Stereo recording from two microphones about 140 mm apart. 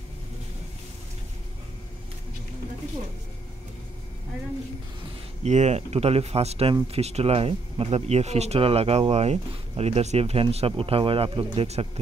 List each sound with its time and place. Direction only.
5.4 s speech: 55° right (ahead or behind)